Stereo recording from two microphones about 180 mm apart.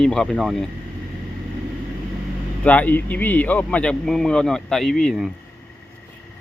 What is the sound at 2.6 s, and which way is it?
Speech, 10° left (ahead or behind).